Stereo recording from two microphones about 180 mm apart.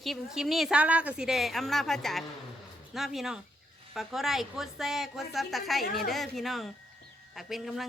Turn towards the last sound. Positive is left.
turn(degrees=0)  # may be behind; listen again after turning